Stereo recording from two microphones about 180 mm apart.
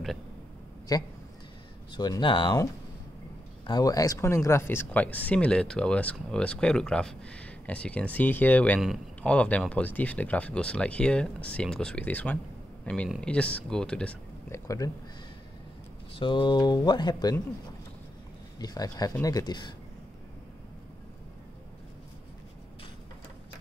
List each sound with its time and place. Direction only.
0.9 s speech: 20° left (ahead or behind); by 14.1 s 5° left (ahead or behind)
14.5 s speech: 15° left (ahead or behind)
16.2 s speech: 25° left (ahead or behind)
18.6 s speech: 20° left (ahead or behind)